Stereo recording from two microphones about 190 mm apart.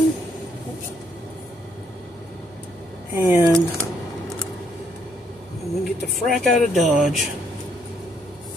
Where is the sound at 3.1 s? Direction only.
15° right (ahead or behind).